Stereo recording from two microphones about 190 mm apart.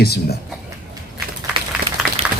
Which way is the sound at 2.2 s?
5° right (ahead or behind).